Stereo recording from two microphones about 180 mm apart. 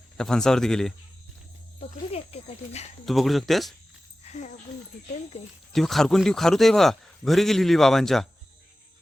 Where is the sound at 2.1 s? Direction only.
35° left (ahead or behind).